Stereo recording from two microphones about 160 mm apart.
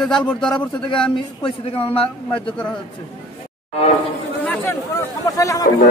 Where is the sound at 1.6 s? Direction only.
35° left (ahead or behind).